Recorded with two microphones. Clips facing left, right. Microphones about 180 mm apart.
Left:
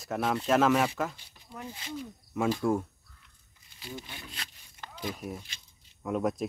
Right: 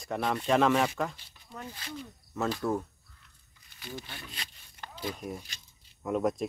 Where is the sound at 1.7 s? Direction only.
20° left (ahead or behind).